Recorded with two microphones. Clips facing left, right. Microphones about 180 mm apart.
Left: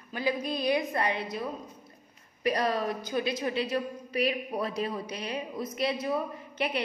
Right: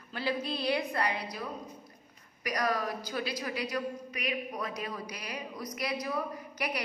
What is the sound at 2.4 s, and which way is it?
A woman's voice, 25° left (ahead or behind).